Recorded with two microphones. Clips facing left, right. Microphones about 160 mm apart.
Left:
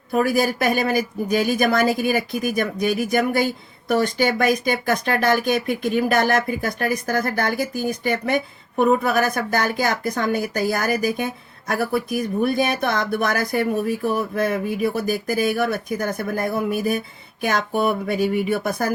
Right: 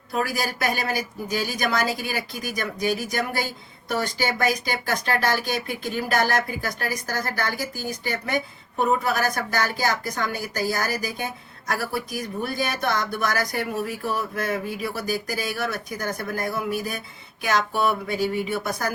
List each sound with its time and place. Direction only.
0.1 s speech: 55° left (ahead or behind)